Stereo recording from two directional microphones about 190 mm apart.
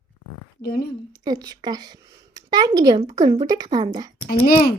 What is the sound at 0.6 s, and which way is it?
Speech, 55° left (ahead or behind).